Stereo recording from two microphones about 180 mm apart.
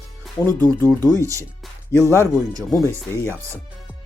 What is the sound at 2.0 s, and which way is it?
Speech, 15° left (ahead or behind).